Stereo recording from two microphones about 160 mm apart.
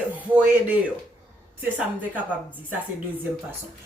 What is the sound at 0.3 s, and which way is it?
Speech, 10° right (ahead or behind).